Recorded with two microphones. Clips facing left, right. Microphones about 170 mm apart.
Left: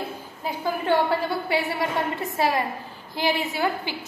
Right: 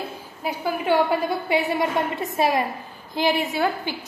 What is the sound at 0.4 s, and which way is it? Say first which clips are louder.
A woman's voice: right 1 dB; 10° right (ahead or behind).